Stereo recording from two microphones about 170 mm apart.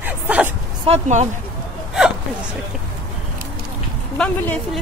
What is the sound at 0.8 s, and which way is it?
Speech, 40° right (ahead or behind).